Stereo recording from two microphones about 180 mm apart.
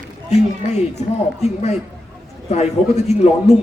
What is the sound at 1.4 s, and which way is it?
Speech, 35° left (ahead or behind).